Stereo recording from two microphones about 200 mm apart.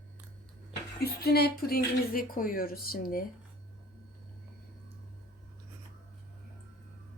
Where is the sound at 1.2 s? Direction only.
50° left (ahead or behind).